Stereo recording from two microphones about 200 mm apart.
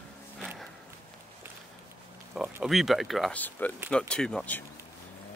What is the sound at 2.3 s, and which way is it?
Speech, centre (ahead or behind).